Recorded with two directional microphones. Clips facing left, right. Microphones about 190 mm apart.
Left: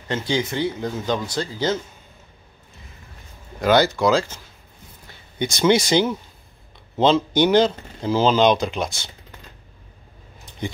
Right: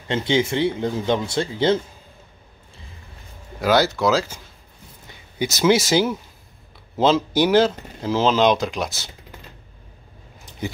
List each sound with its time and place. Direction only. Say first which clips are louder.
0.1 s speech: right 3 dB; 25° right (ahead or behind)
3.6 s speech: left 1 dB; centre (ahead or behind)
5.4 s speech: even; 5° right (ahead or behind)